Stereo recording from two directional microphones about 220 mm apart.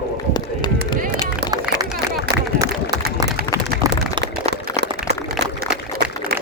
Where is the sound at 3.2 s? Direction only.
15° right (ahead or behind).